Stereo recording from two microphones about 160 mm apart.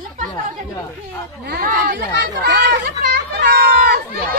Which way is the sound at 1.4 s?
75° right (ahead or behind).